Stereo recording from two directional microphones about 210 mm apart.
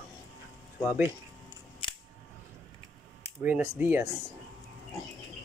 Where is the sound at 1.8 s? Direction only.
25° left (ahead or behind).